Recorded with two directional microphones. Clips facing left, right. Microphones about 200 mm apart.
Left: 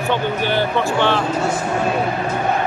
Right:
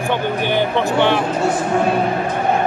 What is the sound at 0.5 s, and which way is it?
Speech, 15° right (ahead or behind).